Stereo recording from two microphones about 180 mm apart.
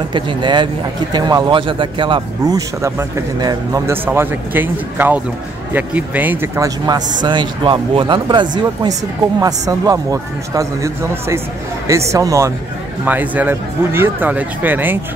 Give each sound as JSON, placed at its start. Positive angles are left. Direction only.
{"t": 0.1, "sound": "speech", "side_deg": -25}